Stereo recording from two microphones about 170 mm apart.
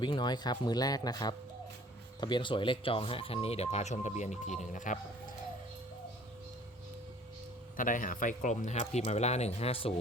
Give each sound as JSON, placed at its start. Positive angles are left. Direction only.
{"t": 0.0, "sound": "speech", "side_deg": 25}
{"t": 7.8, "sound": "speech", "side_deg": 50}